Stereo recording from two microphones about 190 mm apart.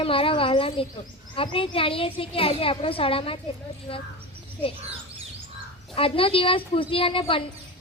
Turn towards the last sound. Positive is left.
turn(degrees=30)  # may be behind; listen again after turning